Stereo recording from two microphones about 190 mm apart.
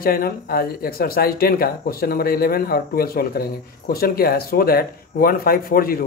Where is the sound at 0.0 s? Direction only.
50° left (ahead or behind).